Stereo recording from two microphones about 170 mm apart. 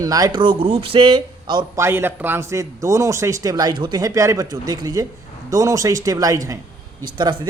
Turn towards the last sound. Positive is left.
turn(degrees=-25)  # may be behind; listen again after turning